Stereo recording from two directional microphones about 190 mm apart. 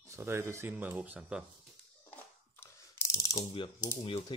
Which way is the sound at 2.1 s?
15° left (ahead or behind).